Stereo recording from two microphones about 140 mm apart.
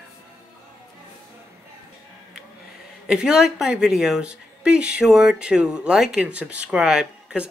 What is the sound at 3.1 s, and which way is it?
Speech, 5° right (ahead or behind).